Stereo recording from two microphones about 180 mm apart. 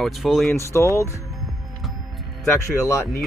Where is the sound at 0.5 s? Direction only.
15° left (ahead or behind).